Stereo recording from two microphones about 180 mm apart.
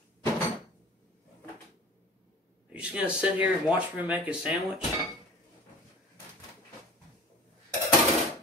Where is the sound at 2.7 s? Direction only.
5° right (ahead or behind).